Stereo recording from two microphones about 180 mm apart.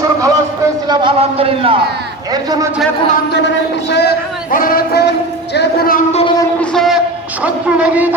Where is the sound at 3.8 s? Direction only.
70° left (ahead or behind).